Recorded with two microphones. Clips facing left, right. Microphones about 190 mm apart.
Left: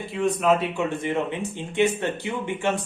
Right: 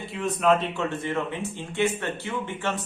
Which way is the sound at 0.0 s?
Centre (ahead or behind).